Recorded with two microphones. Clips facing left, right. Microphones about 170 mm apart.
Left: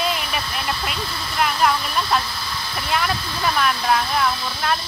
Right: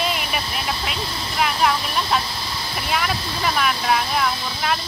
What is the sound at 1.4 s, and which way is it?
Speech, 5° right (ahead or behind).